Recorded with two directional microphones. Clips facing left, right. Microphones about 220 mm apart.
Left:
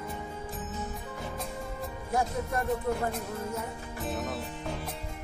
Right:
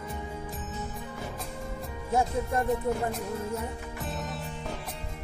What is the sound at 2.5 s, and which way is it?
Music, 25° right (ahead or behind).